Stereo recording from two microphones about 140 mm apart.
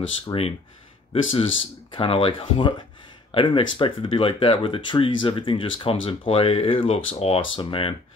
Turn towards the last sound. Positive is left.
turn(degrees=40)  # may be behind; listen again after turning